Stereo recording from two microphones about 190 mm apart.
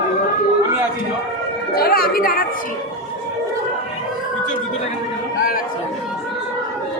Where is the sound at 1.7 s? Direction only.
55° left (ahead or behind).